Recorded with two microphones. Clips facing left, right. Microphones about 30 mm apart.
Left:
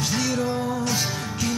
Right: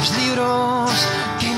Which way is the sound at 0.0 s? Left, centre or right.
Right.